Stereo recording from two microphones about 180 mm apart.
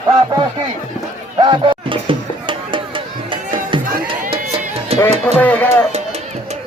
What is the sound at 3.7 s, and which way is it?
Music, 30° right (ahead or behind).